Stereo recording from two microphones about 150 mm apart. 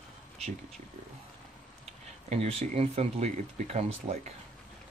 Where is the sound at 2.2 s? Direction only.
45° right (ahead or behind).